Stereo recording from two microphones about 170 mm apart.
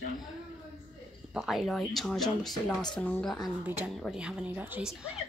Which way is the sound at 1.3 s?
Centre (ahead or behind).